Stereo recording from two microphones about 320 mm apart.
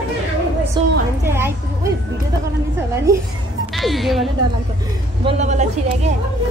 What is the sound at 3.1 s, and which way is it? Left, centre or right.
A woman's voice, centre.